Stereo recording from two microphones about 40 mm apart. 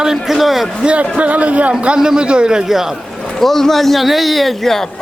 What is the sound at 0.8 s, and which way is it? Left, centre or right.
Speech, right.